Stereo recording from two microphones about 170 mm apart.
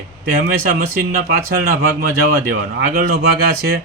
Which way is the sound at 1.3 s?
55° right (ahead or behind).